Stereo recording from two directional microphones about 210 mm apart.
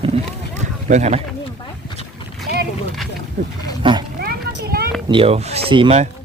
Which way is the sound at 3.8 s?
20° right (ahead or behind).